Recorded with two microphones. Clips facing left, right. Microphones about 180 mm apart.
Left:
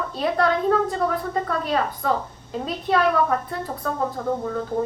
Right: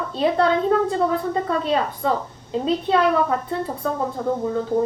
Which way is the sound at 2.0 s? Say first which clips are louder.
Right 1 dB; 25° right (ahead or behind).